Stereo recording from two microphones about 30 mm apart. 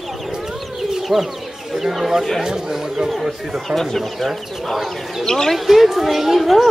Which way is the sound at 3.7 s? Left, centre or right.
Centre.